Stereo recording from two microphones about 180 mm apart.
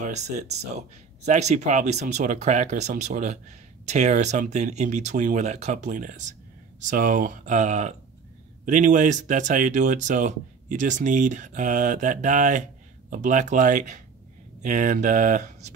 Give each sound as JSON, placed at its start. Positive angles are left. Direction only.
{"t": 0.0, "sound": "speech", "side_deg": -40}